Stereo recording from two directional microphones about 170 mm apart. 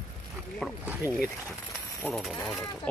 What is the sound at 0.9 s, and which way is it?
Speech, 10° right (ahead or behind).